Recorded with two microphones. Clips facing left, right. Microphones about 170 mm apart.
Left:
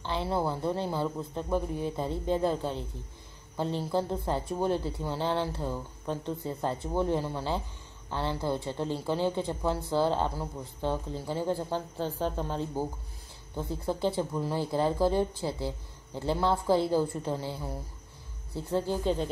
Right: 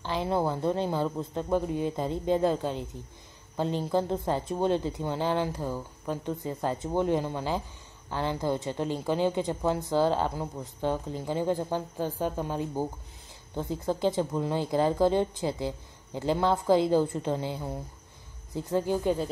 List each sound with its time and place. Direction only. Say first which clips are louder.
0.0 s a woman's voice: right 2 dB; 15° right (ahead or behind)